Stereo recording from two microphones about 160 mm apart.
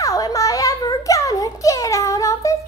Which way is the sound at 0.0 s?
20° left (ahead or behind).